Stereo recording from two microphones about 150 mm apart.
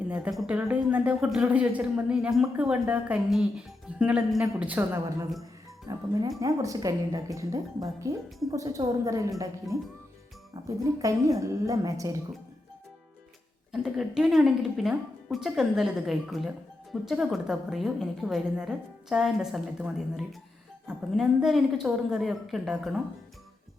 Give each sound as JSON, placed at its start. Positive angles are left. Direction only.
{"t": 0.1, "sound": "a woman's voice", "side_deg": -5}
{"t": 13.7, "sound": "a woman's voice", "side_deg": -5}